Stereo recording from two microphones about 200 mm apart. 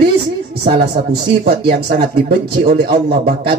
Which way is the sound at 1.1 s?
50° right (ahead or behind).